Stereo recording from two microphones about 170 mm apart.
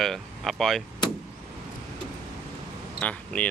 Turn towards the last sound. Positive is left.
turn(degrees=5)  # may be behind; listen again after turning